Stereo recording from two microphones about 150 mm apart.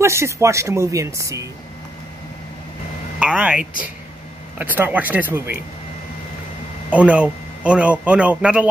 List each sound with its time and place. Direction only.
0.0 s speech: 20° right (ahead or behind)
3.2 s speech: 10° right (ahead or behind)
6.9 s speech: 10° right (ahead or behind)